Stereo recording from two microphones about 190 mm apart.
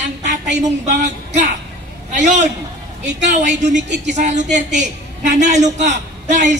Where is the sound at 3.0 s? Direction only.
65° right (ahead or behind).